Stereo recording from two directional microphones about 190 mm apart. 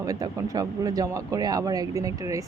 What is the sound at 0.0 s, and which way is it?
A woman's voice, 20° right (ahead or behind).